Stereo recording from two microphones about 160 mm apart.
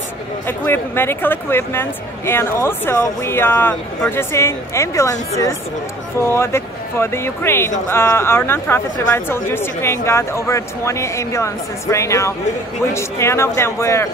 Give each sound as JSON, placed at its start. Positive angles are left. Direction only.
{"t": 0.5, "sound": "speech", "side_deg": 15}
{"t": 6.2, "sound": "speech", "side_deg": 15}